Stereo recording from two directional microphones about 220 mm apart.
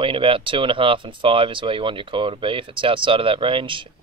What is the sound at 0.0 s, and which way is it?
Speech, 25° right (ahead or behind).